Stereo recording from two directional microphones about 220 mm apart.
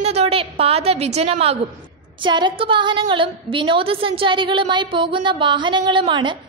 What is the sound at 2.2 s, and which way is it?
A woman's voice, 20° right (ahead or behind).